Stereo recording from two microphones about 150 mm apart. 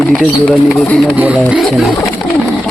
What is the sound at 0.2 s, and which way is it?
Speech, 5° left (ahead or behind).